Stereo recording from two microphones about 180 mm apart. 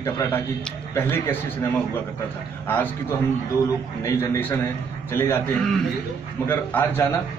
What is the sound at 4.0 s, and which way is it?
A man's voice, 15° left (ahead or behind).